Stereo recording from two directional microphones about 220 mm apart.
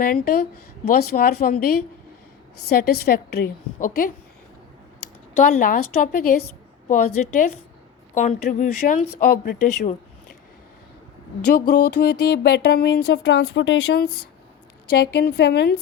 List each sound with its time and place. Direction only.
0.0 s music: 45° left (ahead or behind)
2.6 s music: 45° left (ahead or behind)
5.3 s a woman's voice: 40° left (ahead or behind)
11.5 s music: 45° left (ahead or behind)